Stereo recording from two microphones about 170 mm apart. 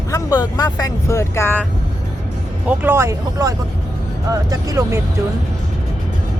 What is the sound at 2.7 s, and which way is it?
Speech, 10° right (ahead or behind).